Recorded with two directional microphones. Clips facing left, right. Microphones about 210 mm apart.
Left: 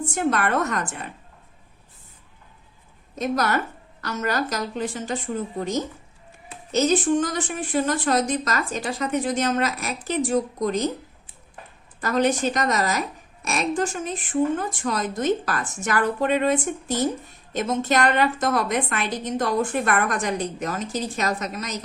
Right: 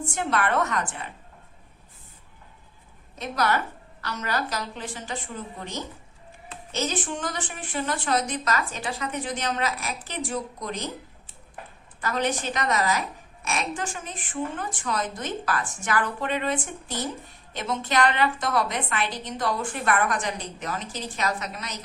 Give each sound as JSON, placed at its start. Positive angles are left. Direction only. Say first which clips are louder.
{"t": 0.0, "sound": "a woman's voice", "louder": "left 3 dB", "side_deg": 45}
{"t": 3.2, "sound": "a woman's voice", "louder": "left 3 dB", "side_deg": 45}
{"t": 11.9, "sound": "a woman's voice", "louder": "left 6 dB", "side_deg": 45}